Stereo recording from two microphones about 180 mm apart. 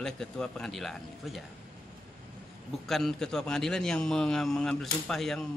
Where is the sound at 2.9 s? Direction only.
Centre (ahead or behind).